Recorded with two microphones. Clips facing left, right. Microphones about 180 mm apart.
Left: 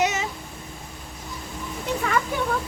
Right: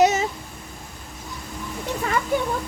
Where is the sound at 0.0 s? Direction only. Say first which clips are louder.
Right 6 dB; 35° right (ahead or behind).